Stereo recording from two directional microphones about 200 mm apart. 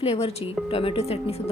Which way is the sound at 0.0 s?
30° left (ahead or behind).